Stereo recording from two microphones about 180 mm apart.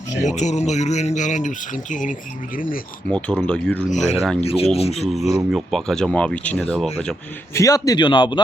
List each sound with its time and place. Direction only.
0.2 s speech: 40° left (ahead or behind)
3.1 s speech: 10° left (ahead or behind)
3.8 s speech: 40° left (ahead or behind)
4.2 s speech: 5° left (ahead or behind)
4.4 s speech: 35° left (ahead or behind)
4.9 s speech: centre (ahead or behind)
7.5 s speech: 20° left (ahead or behind)